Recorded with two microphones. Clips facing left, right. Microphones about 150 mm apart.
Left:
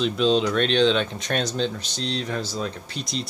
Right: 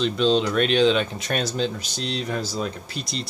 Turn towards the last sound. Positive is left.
turn(degrees=0)  # may be behind; listen again after turning